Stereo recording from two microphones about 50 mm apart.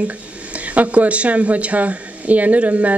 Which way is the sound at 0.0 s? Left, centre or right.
Right.